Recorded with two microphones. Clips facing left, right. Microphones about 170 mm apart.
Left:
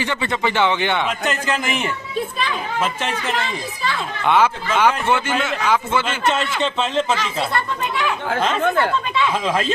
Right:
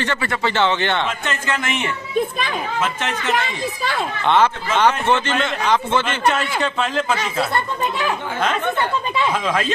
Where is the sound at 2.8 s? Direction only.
35° left (ahead or behind).